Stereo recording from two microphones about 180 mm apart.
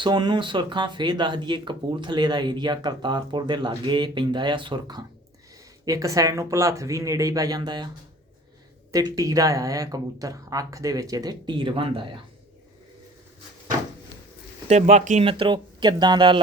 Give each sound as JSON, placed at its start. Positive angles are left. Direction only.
{"t": 0.0, "sound": "speech", "side_deg": -25}
{"t": 8.9, "sound": "speech", "side_deg": -20}
{"t": 14.7, "sound": "speech", "side_deg": -40}
{"t": 15.3, "sound": "speech", "side_deg": -30}